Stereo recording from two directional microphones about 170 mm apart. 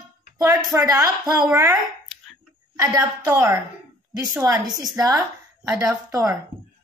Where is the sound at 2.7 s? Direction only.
15° right (ahead or behind).